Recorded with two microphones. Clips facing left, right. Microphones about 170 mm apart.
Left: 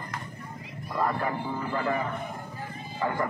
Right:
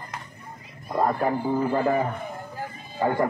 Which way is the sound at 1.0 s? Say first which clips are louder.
Right 7 dB; 40° right (ahead or behind).